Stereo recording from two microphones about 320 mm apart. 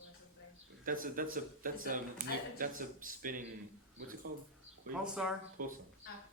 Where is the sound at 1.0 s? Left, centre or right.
Right.